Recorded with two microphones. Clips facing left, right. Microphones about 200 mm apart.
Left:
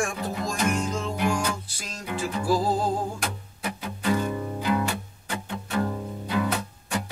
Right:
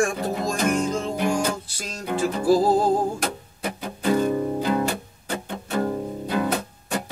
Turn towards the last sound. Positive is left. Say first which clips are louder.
# right 3 dB
turn(degrees=-40)  # may be behind; listen again after turning